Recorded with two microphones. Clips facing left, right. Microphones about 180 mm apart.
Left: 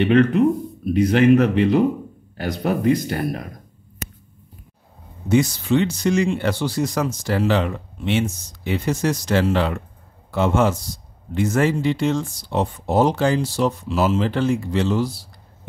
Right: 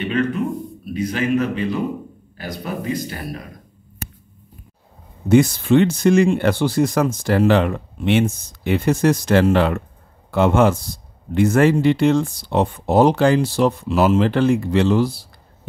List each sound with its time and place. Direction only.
0.0 s speech: 65° left (ahead or behind)
5.3 s speech: 55° right (ahead or behind)